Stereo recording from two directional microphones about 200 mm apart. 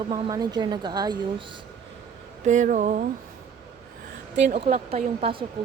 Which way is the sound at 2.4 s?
35° right (ahead or behind).